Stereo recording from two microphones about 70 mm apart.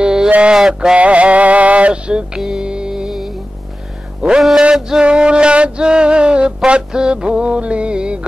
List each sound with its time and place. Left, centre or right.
0.0 s mantra: centre
0.6 s male singing: centre
4.2 s music: centre